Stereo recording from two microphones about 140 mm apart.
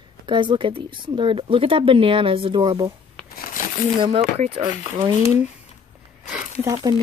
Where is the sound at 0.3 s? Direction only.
35° right (ahead or behind).